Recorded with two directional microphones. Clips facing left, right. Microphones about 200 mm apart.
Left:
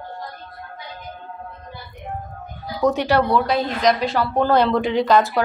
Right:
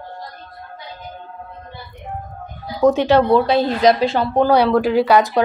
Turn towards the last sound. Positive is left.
turn(degrees=-15)  # may be behind; listen again after turning